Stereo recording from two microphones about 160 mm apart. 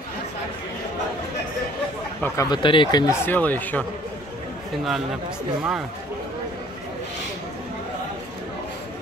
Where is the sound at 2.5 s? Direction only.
30° left (ahead or behind).